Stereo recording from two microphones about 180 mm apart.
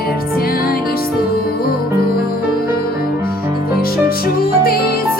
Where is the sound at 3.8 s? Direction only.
55° left (ahead or behind).